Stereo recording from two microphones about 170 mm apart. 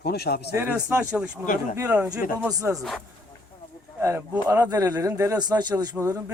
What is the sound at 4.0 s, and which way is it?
Speech, 15° right (ahead or behind).